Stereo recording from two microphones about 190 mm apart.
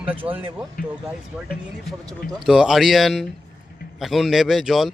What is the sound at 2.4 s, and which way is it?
A man's voice, centre (ahead or behind).